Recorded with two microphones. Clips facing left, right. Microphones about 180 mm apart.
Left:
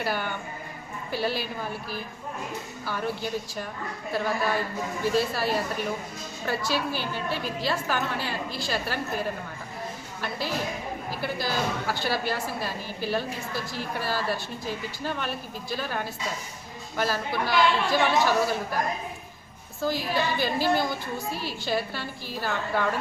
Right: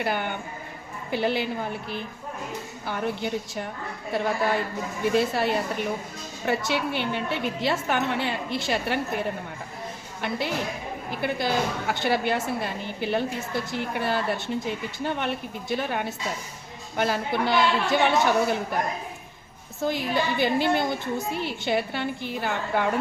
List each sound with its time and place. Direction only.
0.0 s a woman's voice: 20° right (ahead or behind)
2.8 s a woman's voice: 20° right (ahead or behind)
19.8 s a woman's voice: 20° right (ahead or behind)